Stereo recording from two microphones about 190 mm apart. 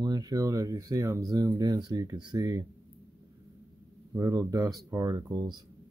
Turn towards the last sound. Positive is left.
turn(degrees=-20)  # may be behind; listen again after turning